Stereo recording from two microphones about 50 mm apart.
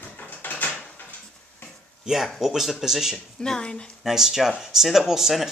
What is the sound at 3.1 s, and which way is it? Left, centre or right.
Speech, centre.